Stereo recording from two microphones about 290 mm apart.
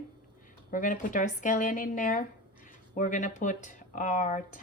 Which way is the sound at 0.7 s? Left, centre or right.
Left.